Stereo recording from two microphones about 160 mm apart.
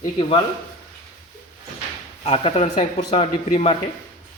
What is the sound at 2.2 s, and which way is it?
Speech, 40° left (ahead or behind).